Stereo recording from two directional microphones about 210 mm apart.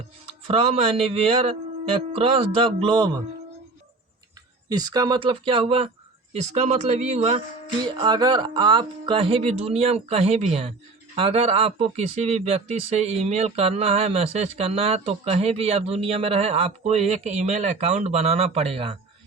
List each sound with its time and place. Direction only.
0.4 s speech: 30° right (ahead or behind)
4.7 s speech: 20° right (ahead or behind)